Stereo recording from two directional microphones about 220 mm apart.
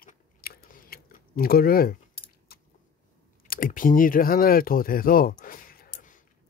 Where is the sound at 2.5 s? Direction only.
45° left (ahead or behind).